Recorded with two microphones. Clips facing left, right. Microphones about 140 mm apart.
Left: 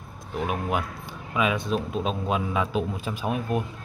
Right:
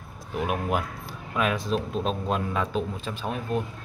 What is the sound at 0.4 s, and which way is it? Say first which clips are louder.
A man's voice: even; centre (ahead or behind).